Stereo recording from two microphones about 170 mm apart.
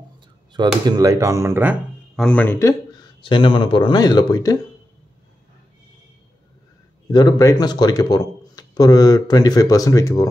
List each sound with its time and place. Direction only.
0.8 s speech: 20° right (ahead or behind)
2.1 s speech: 5° left (ahead or behind)
2.9 s a man's voice: 25° left (ahead or behind)
7.1 s speech: 25° left (ahead or behind)